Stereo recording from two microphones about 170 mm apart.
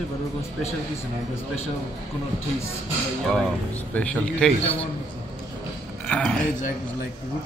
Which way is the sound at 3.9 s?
5° left (ahead or behind).